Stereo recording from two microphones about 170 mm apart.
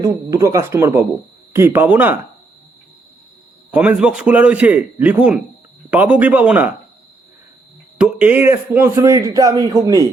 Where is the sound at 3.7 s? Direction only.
10° right (ahead or behind).